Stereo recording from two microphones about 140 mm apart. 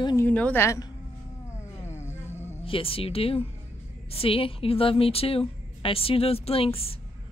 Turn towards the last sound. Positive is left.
turn(degrees=45)  # may be behind; listen again after turning